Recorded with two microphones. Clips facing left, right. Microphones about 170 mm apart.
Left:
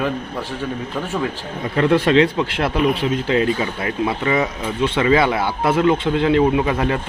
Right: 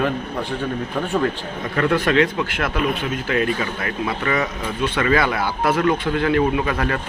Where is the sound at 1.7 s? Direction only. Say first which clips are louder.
Left 3 dB; 25° left (ahead or behind).